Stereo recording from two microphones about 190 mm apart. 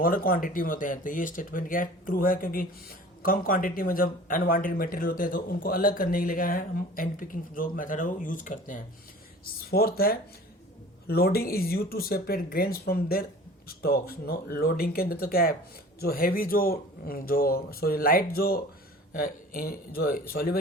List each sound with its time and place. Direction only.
0.0 s speech: 50° left (ahead or behind)